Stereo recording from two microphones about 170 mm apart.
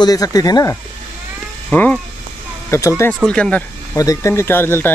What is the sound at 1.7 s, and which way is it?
Speech, 5° left (ahead or behind).